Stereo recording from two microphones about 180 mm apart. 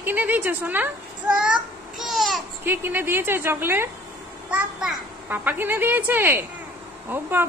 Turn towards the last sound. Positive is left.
turn(degrees=-10)  # may be behind; listen again after turning